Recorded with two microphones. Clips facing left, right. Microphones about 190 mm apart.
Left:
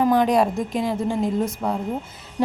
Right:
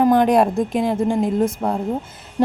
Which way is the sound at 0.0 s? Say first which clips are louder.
Right 3 dB; 50° right (ahead or behind).